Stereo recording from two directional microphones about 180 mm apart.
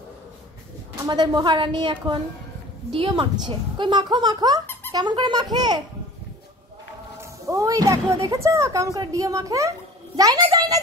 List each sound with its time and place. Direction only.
0.9 s speech: 25° right (ahead or behind)
7.2 s speech: 20° right (ahead or behind)